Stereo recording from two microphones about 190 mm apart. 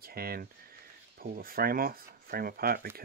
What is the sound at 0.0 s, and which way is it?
Speech, 55° right (ahead or behind).